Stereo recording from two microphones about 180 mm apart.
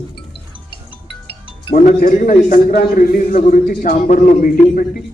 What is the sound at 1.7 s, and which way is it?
A man's voice, 45° left (ahead or behind).